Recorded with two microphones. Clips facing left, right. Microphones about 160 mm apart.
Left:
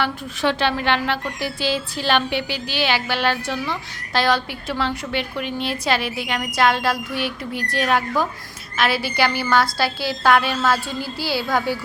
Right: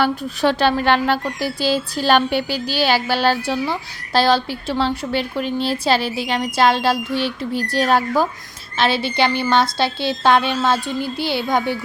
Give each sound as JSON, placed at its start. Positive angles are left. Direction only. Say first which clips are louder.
{"t": 0.0, "sound": "a woman's voice", "louder": "right 4 dB", "side_deg": -40}